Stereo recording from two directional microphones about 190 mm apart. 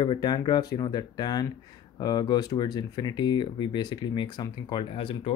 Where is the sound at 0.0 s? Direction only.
20° left (ahead or behind).